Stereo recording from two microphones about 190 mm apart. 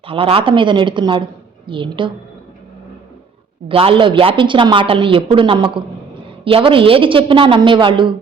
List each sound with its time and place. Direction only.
0.0 s speech: 30° right (ahead or behind)
3.7 s speech: 30° right (ahead or behind)